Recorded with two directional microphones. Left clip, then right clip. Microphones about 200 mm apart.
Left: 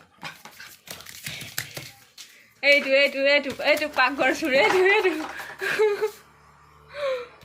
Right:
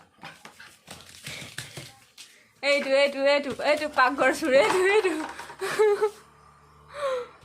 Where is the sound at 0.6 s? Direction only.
40° left (ahead or behind).